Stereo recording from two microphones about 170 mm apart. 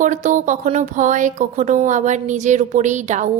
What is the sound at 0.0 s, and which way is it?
Speech, 45° right (ahead or behind).